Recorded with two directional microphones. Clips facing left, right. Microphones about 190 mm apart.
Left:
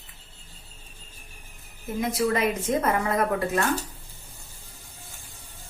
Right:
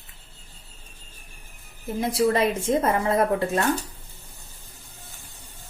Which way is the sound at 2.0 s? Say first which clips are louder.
Right 3 dB; 30° right (ahead or behind).